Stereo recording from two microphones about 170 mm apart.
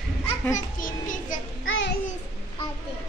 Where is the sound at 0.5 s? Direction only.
50° left (ahead or behind).